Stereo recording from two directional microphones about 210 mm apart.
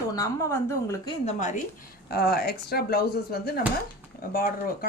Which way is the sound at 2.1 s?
50° left (ahead or behind).